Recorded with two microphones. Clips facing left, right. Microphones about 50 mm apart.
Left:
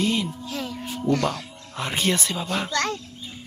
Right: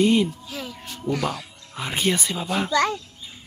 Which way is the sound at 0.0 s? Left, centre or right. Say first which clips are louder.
Right 5 dB; centre.